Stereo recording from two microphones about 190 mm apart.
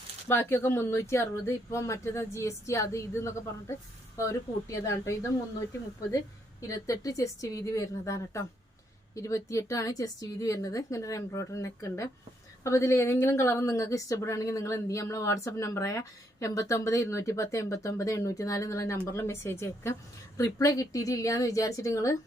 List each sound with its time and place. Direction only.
0.3 s a woman's voice: 10° left (ahead or behind)